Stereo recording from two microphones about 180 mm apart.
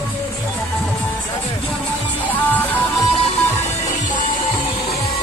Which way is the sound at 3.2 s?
40° left (ahead or behind).